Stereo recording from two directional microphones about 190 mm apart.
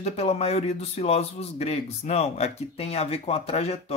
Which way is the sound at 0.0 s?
35° left (ahead or behind).